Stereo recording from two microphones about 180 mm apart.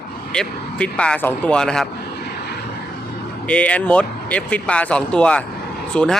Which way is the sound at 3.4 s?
10° left (ahead or behind).